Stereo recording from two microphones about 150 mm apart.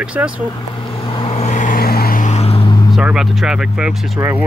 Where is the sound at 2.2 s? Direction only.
45° left (ahead or behind).